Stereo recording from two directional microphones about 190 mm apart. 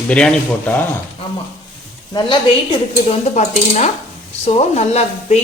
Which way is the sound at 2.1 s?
30° left (ahead or behind).